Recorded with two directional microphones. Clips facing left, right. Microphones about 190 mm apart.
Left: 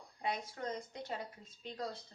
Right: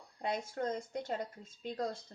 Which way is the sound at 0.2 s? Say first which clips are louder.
Right 4 dB; 50° right (ahead or behind).